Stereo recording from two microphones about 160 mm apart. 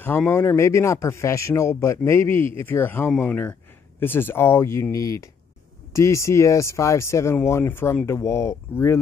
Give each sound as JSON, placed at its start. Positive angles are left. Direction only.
{"t": 0.0, "sound": "speech", "side_deg": 15}